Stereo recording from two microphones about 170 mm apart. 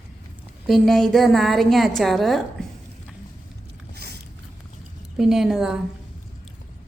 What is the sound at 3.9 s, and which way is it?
Biting, 70° right (ahead or behind).